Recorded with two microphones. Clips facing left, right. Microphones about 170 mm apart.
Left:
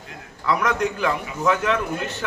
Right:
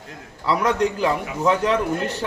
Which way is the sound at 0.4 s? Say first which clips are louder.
Right 2 dB; 30° right (ahead or behind).